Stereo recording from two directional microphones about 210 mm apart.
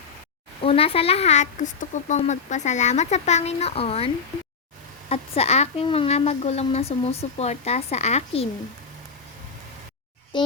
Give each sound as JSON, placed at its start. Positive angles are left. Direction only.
{"t": 0.6, "sound": "a woman's voice", "side_deg": 25}
{"t": 10.3, "sound": "a child's voice", "side_deg": 20}